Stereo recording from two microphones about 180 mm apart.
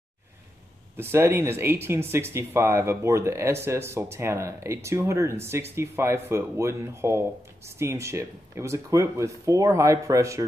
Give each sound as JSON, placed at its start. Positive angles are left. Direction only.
{"t": 0.9, "sound": "speech", "side_deg": -15}